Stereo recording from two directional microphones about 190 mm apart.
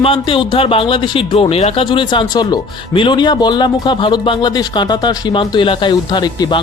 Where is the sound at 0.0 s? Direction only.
30° left (ahead or behind).